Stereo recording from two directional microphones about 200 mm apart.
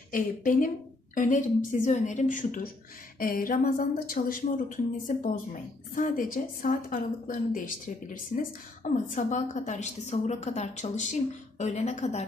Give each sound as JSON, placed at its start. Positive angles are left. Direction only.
{"t": 0.1, "sound": "a woman's voice", "side_deg": 45}